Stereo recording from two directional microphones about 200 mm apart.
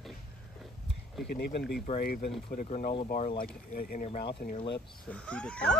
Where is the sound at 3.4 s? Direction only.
45° left (ahead or behind).